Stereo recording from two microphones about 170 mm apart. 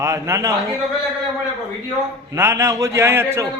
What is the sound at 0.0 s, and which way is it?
Speech, 20° right (ahead or behind).